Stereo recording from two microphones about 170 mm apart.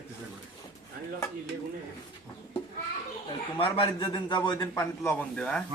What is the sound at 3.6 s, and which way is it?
A man's voice, 30° left (ahead or behind).